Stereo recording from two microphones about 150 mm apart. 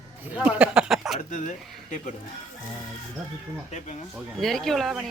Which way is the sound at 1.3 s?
55° left (ahead or behind).